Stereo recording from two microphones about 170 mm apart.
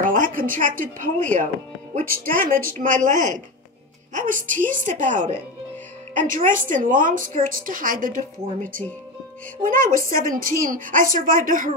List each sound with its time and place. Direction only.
0.1 s a woman's voice: 50° right (ahead or behind)